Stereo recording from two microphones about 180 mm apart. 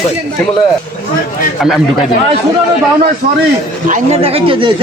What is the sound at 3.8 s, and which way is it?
Speech, 40° right (ahead or behind).